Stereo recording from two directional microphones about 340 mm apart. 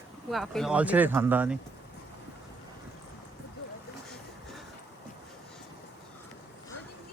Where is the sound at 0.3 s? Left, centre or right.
Centre.